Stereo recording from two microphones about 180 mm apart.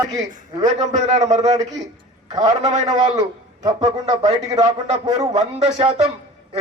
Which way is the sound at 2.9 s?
20° right (ahead or behind).